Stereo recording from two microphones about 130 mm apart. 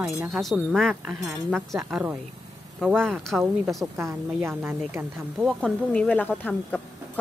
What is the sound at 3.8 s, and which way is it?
Speech, 20° right (ahead or behind).